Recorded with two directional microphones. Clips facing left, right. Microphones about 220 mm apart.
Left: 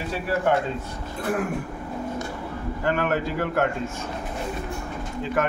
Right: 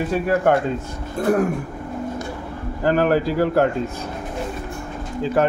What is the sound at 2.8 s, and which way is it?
Speech, 35° right (ahead or behind).